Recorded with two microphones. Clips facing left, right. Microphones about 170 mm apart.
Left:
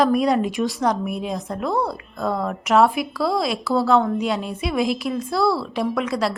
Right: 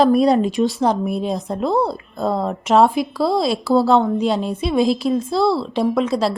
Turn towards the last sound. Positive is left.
turn(degrees=-25)  # may be behind; listen again after turning